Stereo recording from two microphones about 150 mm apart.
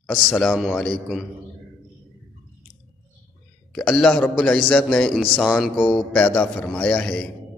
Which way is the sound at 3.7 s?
5° left (ahead or behind).